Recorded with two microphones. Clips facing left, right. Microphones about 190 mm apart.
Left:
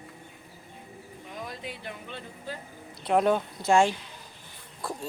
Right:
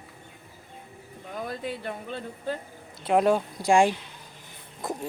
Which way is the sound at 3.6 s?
15° right (ahead or behind).